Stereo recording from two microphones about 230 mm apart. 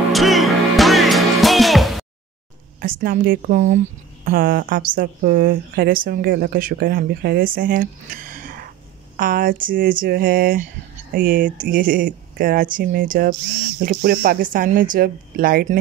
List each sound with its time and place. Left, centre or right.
0.1 s music: centre
2.8 s speech: right